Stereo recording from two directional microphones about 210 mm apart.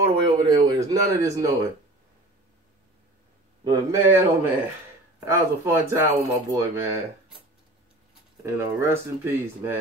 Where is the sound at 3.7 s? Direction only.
10° right (ahead or behind).